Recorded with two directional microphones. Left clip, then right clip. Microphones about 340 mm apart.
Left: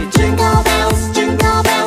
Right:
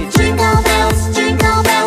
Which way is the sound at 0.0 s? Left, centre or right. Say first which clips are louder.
Right 1 dB; centre.